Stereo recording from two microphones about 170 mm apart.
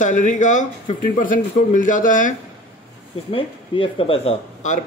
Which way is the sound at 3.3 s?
30° left (ahead or behind).